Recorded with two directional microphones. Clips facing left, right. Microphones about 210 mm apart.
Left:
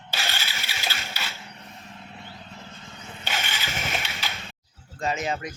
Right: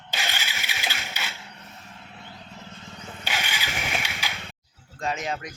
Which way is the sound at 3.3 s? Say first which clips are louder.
Even; 10° right (ahead or behind).